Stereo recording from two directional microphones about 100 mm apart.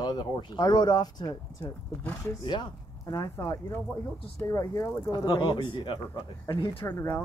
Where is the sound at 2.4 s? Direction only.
50° left (ahead or behind).